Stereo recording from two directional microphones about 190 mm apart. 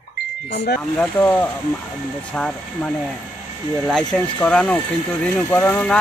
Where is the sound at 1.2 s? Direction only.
10° left (ahead or behind).